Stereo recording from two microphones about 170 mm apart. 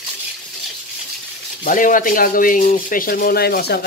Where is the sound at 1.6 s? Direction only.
55° left (ahead or behind).